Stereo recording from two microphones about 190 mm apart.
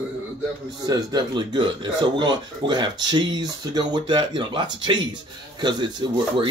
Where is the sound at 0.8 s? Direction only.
20° right (ahead or behind).